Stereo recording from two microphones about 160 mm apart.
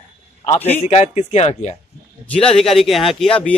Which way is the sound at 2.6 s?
Centre (ahead or behind).